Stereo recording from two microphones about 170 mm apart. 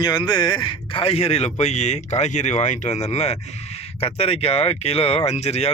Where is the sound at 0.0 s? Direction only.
25° left (ahead or behind).